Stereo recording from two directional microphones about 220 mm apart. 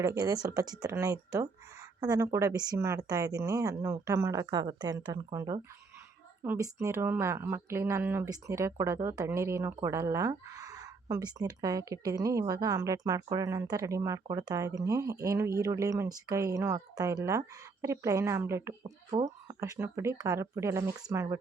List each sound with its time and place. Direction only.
0.0 s speech: 15° right (ahead or behind)
18.8 s speech: 25° right (ahead or behind)
19.5 s speech: 15° right (ahead or behind)